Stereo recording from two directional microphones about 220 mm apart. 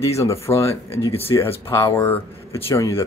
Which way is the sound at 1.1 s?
25° left (ahead or behind).